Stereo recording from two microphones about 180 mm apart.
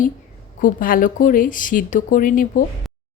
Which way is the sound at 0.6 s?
50° left (ahead or behind).